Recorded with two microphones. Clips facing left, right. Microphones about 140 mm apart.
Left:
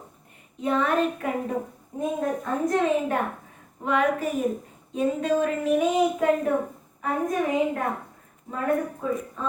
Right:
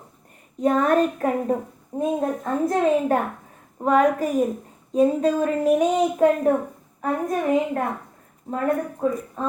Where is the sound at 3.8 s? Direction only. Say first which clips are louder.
Right 5 dB; 40° right (ahead or behind).